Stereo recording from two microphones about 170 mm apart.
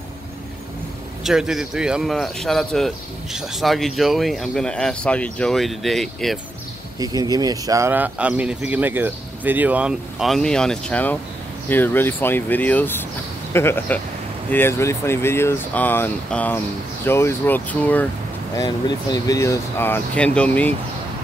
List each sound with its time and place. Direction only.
1.2 s speech: centre (ahead or behind)
7.0 s speech: 20° right (ahead or behind); by 18.0 s 10° left (ahead or behind)
18.6 s speech: 20° left (ahead or behind)